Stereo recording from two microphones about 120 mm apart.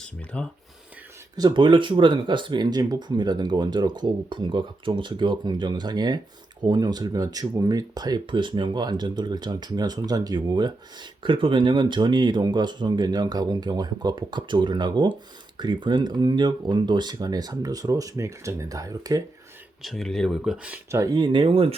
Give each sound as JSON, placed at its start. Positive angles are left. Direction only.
{"t": 0.0, "sound": "speech", "side_deg": 10}
{"t": 1.4, "sound": "speech", "side_deg": -35}
{"t": 19.8, "sound": "speech", "side_deg": 0}
{"t": 20.9, "sound": "speech", "side_deg": -30}